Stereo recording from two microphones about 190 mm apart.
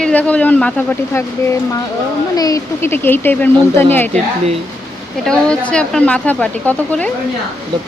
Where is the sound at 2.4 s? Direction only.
20° left (ahead or behind).